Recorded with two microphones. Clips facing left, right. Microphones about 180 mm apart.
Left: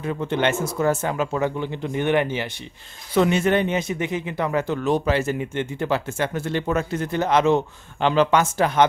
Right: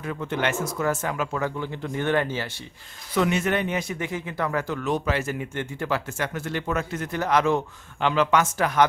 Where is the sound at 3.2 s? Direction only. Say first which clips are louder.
Left 4 dB; 30° left (ahead or behind).